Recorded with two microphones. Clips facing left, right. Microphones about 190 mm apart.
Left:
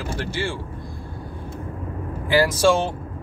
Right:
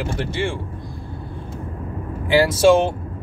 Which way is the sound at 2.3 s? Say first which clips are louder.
Right 4 dB; 20° right (ahead or behind).